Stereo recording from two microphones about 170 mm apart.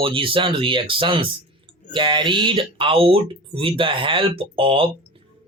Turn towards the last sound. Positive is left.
turn(degrees=-30)  # may be behind; listen again after turning